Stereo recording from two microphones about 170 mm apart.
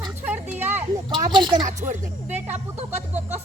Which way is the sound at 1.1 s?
25° right (ahead or behind).